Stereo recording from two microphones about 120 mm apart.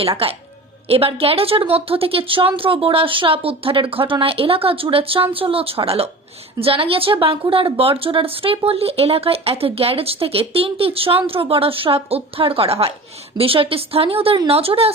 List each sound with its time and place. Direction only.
0.2 s speech: 50° right (ahead or behind)